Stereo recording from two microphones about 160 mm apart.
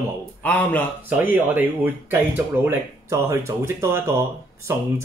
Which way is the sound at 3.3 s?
15° right (ahead or behind).